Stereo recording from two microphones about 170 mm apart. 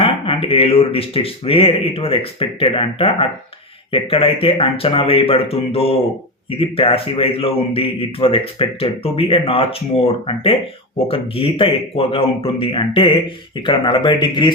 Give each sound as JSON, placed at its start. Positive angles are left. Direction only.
{"t": 0.0, "sound": "a man's voice", "side_deg": 35}